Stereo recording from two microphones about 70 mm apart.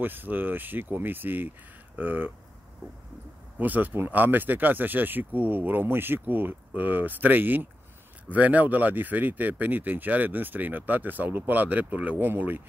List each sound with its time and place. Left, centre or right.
0.0 s speech: right
3.5 s speech: right